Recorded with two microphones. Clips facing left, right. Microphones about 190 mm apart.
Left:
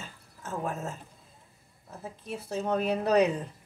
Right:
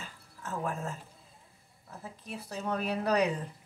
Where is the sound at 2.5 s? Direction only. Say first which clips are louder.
Left 5 dB; 25° left (ahead or behind).